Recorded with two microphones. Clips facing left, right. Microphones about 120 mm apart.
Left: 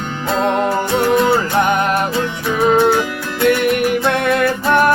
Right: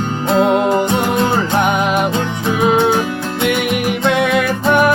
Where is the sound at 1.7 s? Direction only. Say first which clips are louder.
Right 1 dB; 5° right (ahead or behind).